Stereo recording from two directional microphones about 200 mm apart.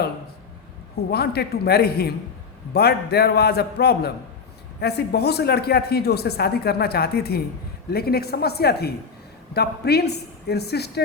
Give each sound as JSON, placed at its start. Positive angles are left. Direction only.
{"t": 1.1, "sound": "speech", "side_deg": 55}